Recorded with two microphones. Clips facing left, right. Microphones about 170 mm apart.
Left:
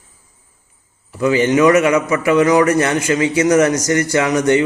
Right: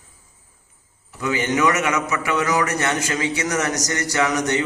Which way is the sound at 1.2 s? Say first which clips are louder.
Left 8 dB; 25° left (ahead or behind).